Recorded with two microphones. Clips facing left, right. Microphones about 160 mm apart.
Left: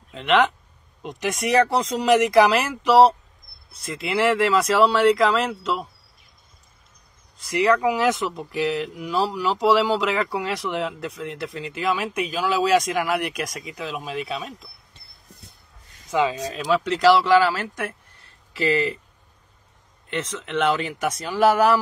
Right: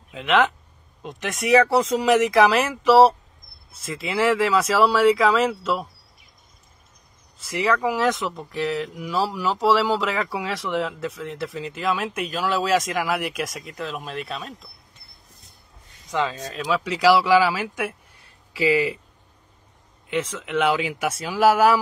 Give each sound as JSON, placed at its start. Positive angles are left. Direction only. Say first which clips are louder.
{"t": 0.1, "sound": "speech", "louder": "left 1 dB", "side_deg": 0}
{"t": 7.3, "sound": "speech", "louder": "left 3 dB", "side_deg": 0}
{"t": 16.1, "sound": "speech", "louder": "left 3 dB", "side_deg": 10}
{"t": 20.1, "sound": "speech", "louder": "right 2 dB", "side_deg": -10}